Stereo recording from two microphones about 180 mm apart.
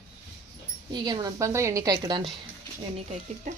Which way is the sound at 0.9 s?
25° right (ahead or behind).